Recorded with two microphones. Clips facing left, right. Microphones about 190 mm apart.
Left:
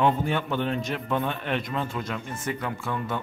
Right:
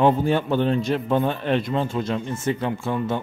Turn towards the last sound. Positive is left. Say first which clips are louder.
# right 6 dB
turn(degrees=-25)  # may be behind; listen again after turning